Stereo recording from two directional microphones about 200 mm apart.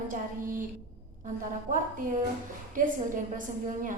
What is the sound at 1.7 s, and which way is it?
A woman's voice, 40° right (ahead or behind).